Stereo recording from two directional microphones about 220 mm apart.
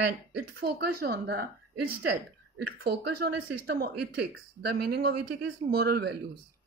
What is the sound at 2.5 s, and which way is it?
Speech, 50° right (ahead or behind).